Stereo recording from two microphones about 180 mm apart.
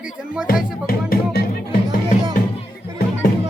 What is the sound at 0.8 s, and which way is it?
Music, 55° left (ahead or behind).